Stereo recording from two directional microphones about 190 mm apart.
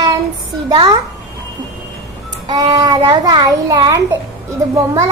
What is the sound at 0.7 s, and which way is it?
Speech, 25° right (ahead or behind).